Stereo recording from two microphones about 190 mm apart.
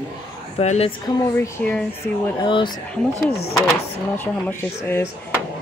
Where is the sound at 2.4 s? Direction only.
25° left (ahead or behind).